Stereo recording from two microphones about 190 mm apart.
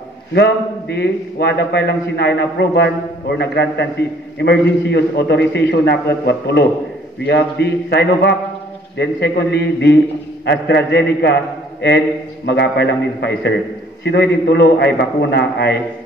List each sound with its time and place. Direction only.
0.3 s a man's voice: 60° left (ahead or behind)
12.4 s a man's voice: 65° left (ahead or behind)